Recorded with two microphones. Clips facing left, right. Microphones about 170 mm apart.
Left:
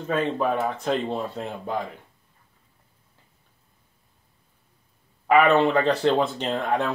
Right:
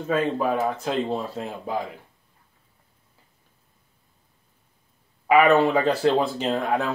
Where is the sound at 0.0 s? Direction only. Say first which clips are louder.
Right 1 dB; 5° right (ahead or behind).